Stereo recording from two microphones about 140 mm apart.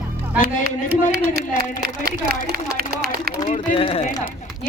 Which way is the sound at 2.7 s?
90° right.